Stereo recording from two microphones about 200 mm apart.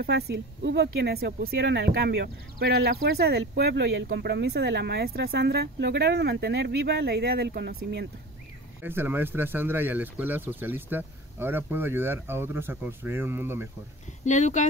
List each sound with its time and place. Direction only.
0.0 s speech: 55° right (ahead or behind)
8.8 s speech: 10° right (ahead or behind)
14.2 s speech: 35° left (ahead or behind)